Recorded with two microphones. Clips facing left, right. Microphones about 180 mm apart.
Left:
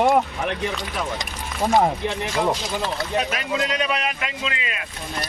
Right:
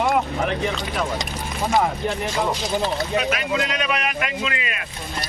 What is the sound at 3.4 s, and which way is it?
A man's voice, 30° left (ahead or behind).